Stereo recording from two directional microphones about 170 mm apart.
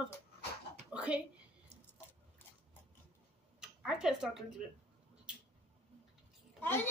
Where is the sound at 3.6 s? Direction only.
5° right (ahead or behind).